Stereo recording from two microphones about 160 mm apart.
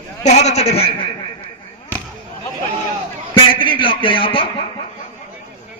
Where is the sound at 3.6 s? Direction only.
30° left (ahead or behind).